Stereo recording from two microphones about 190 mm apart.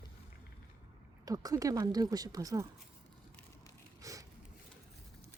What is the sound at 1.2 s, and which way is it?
Speech, 20° right (ahead or behind).